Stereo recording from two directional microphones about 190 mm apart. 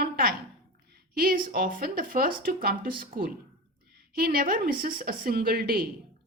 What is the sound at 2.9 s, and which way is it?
Speech, 25° right (ahead or behind).